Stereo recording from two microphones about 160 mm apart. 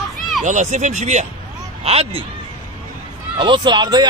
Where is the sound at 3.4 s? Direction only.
30° right (ahead or behind).